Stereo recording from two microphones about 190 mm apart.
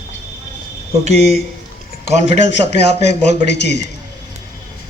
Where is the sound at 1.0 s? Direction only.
35° right (ahead or behind).